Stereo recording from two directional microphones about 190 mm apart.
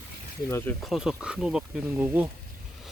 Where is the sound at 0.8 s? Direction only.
Centre (ahead or behind).